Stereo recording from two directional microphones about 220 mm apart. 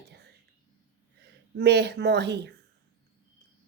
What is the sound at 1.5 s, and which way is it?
A woman's voice, 50° right (ahead or behind).